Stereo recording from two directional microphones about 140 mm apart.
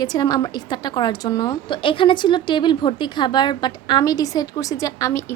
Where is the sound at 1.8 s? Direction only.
40° left (ahead or behind).